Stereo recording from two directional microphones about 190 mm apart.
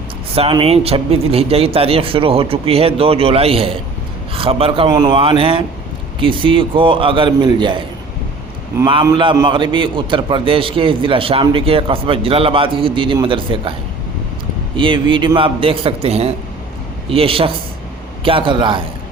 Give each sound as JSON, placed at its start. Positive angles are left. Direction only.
{"t": 0.3, "sound": "a man's voice", "side_deg": -30}
{"t": 8.9, "sound": "a man's voice", "side_deg": -25}
{"t": 14.8, "sound": "a man's voice", "side_deg": -25}